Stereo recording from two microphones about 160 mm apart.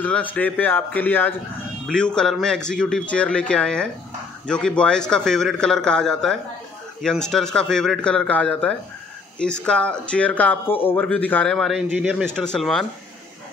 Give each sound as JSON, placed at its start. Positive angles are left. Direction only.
{"t": 0.0, "sound": "a man's voice", "side_deg": 10}